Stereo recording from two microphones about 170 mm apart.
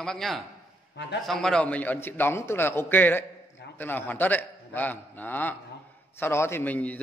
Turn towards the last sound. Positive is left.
turn(degrees=10)  # may be behind; listen again after turning